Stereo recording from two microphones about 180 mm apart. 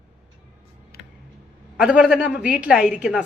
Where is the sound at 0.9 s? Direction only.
60° left (ahead or behind).